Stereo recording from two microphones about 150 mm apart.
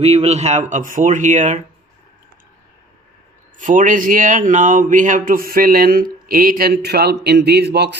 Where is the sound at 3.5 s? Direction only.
60° right (ahead or behind).